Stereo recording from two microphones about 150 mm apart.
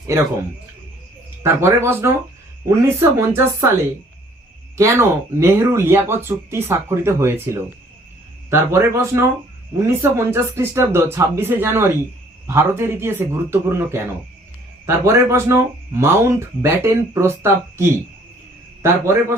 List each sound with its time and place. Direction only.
1.4 s speech: 15° right (ahead or behind)
4.8 s a man's voice: 20° right (ahead or behind)